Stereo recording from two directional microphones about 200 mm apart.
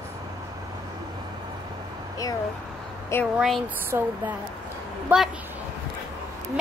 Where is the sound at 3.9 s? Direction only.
10° right (ahead or behind).